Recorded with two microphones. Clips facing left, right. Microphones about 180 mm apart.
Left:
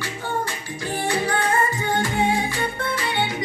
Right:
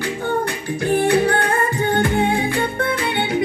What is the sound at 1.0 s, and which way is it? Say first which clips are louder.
Music: right 5 dB; 60° right (ahead or behind).